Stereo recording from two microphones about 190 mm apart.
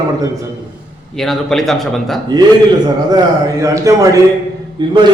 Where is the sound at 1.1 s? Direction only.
Centre (ahead or behind).